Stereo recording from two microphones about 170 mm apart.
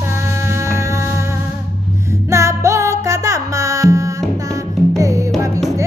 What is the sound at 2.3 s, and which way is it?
Music, 15° right (ahead or behind).